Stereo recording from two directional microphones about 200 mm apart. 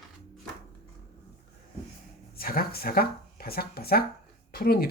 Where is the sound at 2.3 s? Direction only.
50° left (ahead or behind).